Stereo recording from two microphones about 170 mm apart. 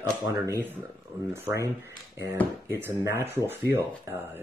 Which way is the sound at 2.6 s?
15° right (ahead or behind).